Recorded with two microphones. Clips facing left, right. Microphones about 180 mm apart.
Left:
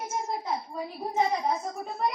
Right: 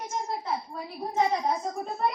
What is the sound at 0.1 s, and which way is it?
A woman's voice, 10° left (ahead or behind).